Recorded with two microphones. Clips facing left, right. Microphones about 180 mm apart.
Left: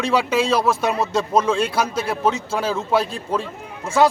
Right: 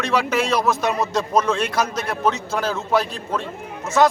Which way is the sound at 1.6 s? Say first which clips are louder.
Left 1 dB; 30° left (ahead or behind).